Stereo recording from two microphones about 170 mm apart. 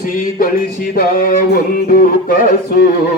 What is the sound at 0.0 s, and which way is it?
Music, 55° left (ahead or behind).